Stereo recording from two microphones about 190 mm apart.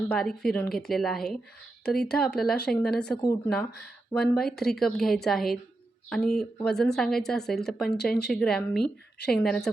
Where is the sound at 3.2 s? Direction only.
20° left (ahead or behind).